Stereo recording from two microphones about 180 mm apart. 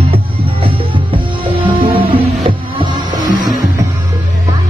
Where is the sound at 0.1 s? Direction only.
30° right (ahead or behind).